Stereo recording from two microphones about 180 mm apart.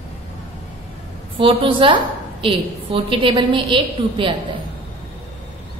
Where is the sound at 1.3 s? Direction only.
30° right (ahead or behind).